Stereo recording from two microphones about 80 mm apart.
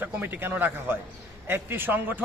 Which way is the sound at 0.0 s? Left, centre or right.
Right.